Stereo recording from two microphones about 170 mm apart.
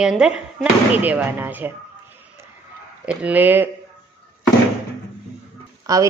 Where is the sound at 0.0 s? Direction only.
5° right (ahead or behind).